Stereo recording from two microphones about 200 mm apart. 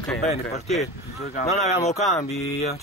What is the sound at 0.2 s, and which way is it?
Speech, 35° left (ahead or behind).